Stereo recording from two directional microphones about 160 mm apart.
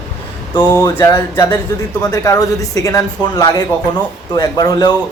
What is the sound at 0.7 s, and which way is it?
Speech, 20° left (ahead or behind).